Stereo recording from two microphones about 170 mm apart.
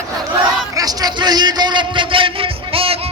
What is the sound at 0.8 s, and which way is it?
A man's voice, 25° right (ahead or behind).